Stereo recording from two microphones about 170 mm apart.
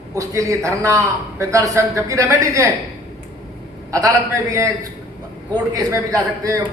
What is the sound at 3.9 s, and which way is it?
Speech, 20° right (ahead or behind).